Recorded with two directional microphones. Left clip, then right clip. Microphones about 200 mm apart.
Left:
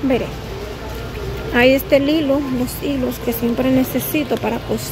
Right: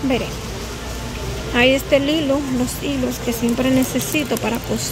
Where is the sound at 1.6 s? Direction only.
15° left (ahead or behind).